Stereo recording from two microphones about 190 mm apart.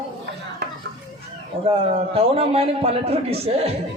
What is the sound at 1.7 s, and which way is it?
A man's voice, 30° right (ahead or behind).